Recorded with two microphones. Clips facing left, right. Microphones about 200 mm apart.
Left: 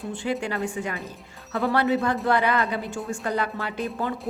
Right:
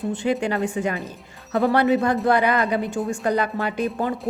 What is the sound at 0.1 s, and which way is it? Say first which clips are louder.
Speech: right 4 dB; 20° right (ahead or behind).